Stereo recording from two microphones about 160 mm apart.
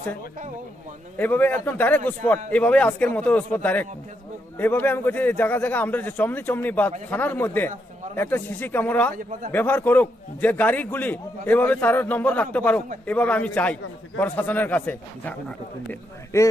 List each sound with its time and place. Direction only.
1.1 s a man's voice: 10° left (ahead or behind)